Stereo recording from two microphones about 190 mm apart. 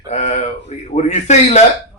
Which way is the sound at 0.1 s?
35° left (ahead or behind).